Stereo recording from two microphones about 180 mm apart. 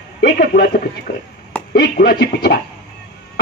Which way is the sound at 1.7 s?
60° left (ahead or behind).